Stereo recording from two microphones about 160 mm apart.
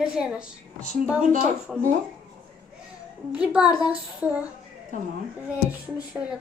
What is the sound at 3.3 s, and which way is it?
A woman's voice, 10° right (ahead or behind).